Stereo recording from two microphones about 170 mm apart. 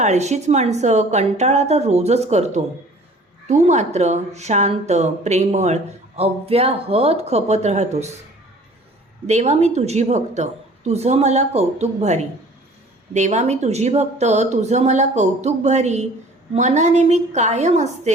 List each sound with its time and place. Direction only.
0.0 s speech: 40° right (ahead or behind)
9.2 s speech: 40° right (ahead or behind)